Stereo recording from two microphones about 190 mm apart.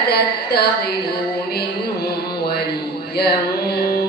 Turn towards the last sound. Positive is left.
turn(degrees=55)  # may be behind; listen again after turning